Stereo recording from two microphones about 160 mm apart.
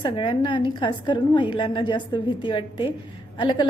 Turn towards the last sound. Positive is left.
turn(degrees=30)  # may be behind; listen again after turning